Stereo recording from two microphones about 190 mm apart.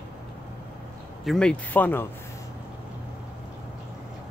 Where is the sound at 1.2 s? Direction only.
5° left (ahead or behind).